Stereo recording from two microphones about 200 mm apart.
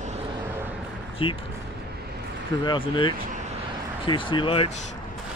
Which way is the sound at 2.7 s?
25° left (ahead or behind).